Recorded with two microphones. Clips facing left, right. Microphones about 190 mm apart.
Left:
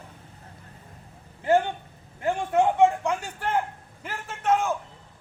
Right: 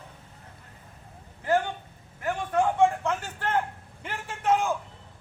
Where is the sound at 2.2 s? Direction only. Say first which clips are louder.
Left 3 dB; 25° left (ahead or behind).